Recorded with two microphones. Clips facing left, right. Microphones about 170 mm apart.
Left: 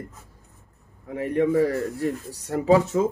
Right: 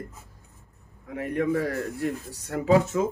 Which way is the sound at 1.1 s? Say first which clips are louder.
Left 4 dB; 35° left (ahead or behind).